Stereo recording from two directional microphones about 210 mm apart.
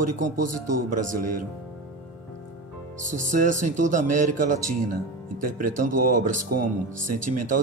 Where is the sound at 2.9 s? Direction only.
35° right (ahead or behind).